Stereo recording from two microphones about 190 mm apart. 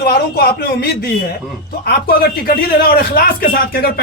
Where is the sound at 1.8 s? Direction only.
55° left (ahead or behind).